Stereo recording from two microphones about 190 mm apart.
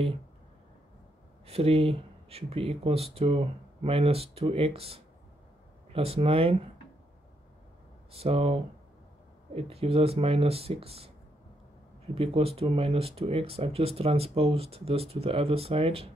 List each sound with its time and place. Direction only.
1.4 s speech: 30° right (ahead or behind)
8.1 s speech: 30° right (ahead or behind)
9.6 s speech: 30° right (ahead or behind)
12.2 s speech: 30° right (ahead or behind)